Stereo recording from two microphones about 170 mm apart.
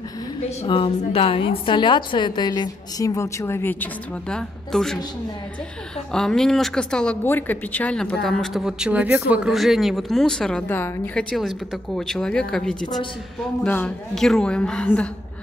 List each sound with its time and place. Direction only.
0.7 s a woman's voice: 30° left (ahead or behind); by 5.0 s 5° left (ahead or behind)
6.1 s speech: 5° left (ahead or behind)